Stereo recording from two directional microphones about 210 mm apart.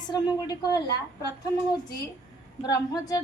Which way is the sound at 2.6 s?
15° left (ahead or behind).